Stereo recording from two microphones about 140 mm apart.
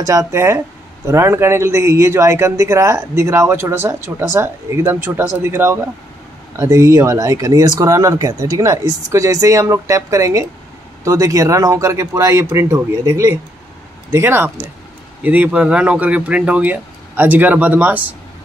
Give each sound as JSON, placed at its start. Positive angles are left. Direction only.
{"t": 0.0, "sound": "a man's voice", "side_deg": -20}